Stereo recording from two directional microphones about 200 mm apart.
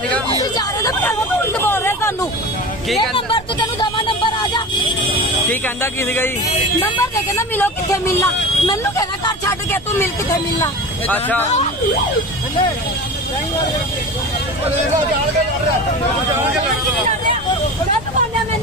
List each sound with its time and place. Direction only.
0.6 s vehicle: 15° left (ahead or behind)
1.7 s a sound: 10° left (ahead or behind)
3.0 s speech: 25° left (ahead or behind)
5.5 s speech: 10° left (ahead or behind)
7.3 s speech: 10° left (ahead or behind)